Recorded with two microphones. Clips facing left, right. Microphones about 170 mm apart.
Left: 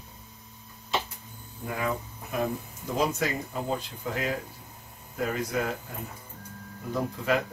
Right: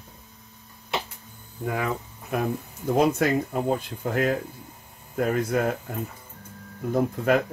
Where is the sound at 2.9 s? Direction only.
55° right (ahead or behind).